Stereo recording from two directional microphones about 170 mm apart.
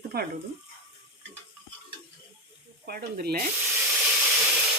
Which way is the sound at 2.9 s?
65° right (ahead or behind).